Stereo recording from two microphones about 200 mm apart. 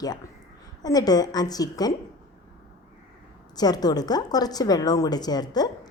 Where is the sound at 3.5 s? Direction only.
20° left (ahead or behind).